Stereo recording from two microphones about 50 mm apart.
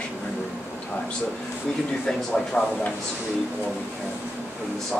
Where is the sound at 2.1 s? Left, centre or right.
Centre.